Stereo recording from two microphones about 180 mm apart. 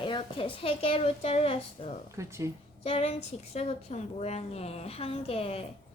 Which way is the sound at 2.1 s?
15° right (ahead or behind).